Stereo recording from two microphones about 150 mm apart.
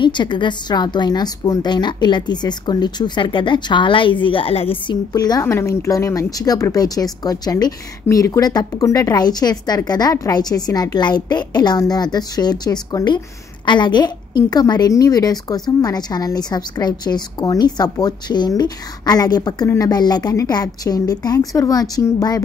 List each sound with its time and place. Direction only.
0.0 s a woman's voice: 30° left (ahead or behind)
5.1 s a woman's voice: 25° left (ahead or behind)